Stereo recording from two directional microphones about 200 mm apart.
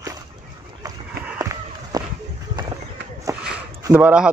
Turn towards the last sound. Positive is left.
turn(degrees=-5)  # may be behind; listen again after turning